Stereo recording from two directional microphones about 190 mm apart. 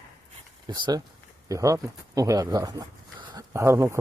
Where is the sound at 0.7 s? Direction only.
20° right (ahead or behind).